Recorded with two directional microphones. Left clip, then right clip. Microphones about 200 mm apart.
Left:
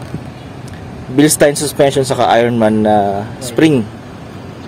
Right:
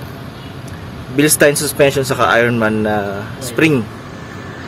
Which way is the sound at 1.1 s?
20° left (ahead or behind).